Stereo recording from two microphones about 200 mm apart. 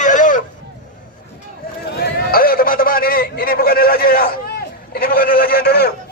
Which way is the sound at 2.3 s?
45° left (ahead or behind).